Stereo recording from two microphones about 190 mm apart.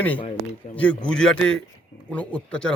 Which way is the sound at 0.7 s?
40° left (ahead or behind).